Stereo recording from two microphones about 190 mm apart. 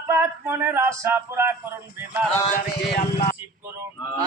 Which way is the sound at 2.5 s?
55° left (ahead or behind).